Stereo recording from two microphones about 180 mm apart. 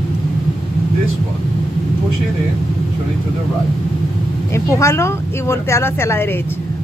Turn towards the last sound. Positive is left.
turn(degrees=15)  # may be behind; listen again after turning